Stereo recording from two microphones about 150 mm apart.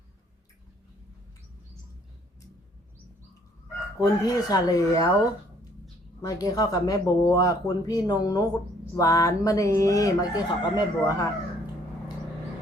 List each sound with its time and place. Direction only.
4.0 s speech: 25° left (ahead or behind)
6.2 s speech: 25° left (ahead or behind)